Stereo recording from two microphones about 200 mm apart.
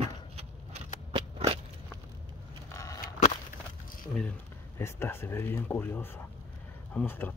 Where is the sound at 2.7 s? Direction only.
15° left (ahead or behind).